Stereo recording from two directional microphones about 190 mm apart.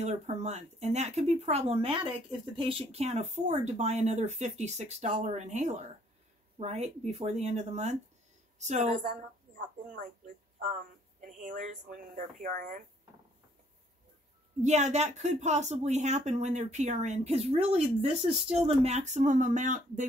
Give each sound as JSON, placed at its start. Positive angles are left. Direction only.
{"t": 0.0, "sound": "speech", "side_deg": -35}
{"t": 14.6, "sound": "speech", "side_deg": -35}